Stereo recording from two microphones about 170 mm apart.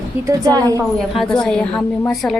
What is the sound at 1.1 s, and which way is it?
Speech, centre (ahead or behind).